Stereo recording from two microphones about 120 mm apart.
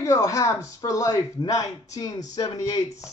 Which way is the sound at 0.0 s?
30° left (ahead or behind).